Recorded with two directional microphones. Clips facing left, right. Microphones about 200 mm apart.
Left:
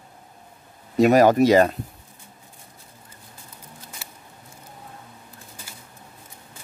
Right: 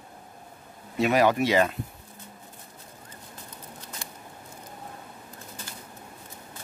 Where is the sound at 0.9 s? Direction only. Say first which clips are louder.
Left 7 dB; 40° left (ahead or behind).